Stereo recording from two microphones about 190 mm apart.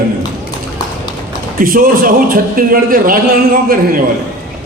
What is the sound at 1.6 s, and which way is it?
A man's voice, 50° right (ahead or behind).